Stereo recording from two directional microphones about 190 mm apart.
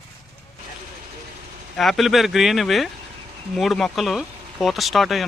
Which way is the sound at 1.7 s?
Centre (ahead or behind).